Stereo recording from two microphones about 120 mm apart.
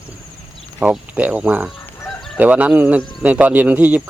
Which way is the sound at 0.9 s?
10° right (ahead or behind).